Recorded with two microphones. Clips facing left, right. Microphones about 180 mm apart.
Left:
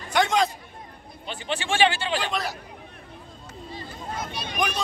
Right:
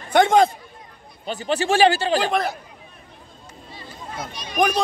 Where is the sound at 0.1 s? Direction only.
55° right (ahead or behind).